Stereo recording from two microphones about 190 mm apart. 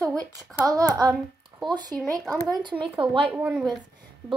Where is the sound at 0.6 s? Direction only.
20° right (ahead or behind).